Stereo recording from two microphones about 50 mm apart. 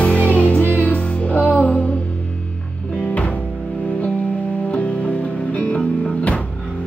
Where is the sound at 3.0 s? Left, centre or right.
Left.